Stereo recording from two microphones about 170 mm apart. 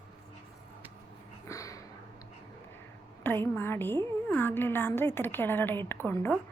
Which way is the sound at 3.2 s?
10° left (ahead or behind).